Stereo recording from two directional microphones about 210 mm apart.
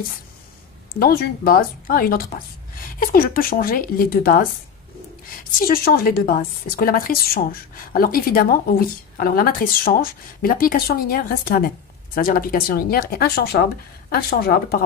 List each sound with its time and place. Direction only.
0.9 s a woman's voice: 45° left (ahead or behind)